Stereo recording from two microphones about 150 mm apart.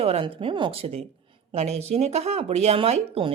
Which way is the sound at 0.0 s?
40° right (ahead or behind).